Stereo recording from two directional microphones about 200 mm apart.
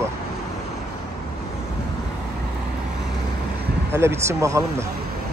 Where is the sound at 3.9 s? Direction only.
10° right (ahead or behind).